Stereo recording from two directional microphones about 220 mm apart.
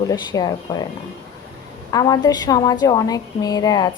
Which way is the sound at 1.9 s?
15° left (ahead or behind).